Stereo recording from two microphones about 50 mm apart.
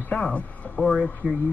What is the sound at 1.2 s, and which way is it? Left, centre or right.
Speech, right.